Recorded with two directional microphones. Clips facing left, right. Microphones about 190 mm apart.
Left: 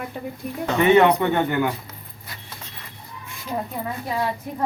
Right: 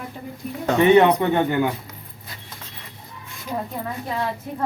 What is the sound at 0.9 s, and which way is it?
Speech, 20° right (ahead or behind).